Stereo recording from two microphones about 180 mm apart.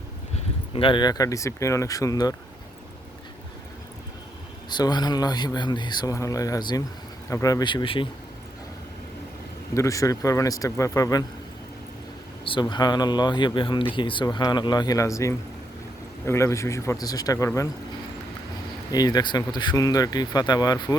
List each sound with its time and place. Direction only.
0.7 s speech: 30° left (ahead or behind)
4.7 s speech: 25° left (ahead or behind)
9.7 s speech: 15° left (ahead or behind)
12.5 s speech: 25° left (ahead or behind)
18.9 s speech: 20° left (ahead or behind)